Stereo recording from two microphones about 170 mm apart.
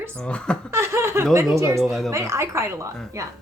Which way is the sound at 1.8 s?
Centre (ahead or behind).